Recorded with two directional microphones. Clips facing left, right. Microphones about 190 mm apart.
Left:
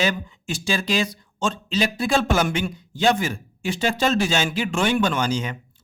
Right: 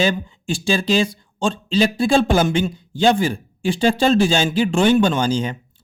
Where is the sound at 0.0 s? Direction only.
30° right (ahead or behind).